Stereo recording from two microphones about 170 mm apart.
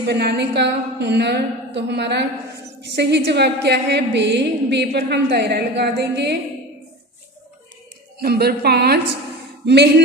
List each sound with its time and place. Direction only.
0.0 s a woman's voice: 75° right (ahead or behind)
8.2 s a woman's voice: 65° right (ahead or behind)